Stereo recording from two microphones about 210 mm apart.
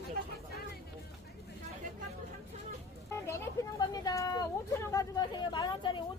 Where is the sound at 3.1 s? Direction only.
15° left (ahead or behind).